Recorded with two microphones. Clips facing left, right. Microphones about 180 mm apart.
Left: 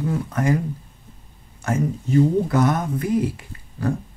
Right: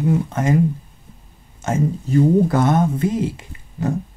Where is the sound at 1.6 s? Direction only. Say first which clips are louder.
Right 2 dB; 20° right (ahead or behind).